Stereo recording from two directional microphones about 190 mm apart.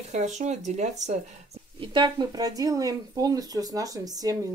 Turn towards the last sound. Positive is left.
turn(degrees=-20)  # may be behind; listen again after turning